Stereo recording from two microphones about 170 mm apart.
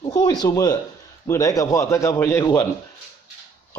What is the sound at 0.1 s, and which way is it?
A man's voice, 25° left (ahead or behind).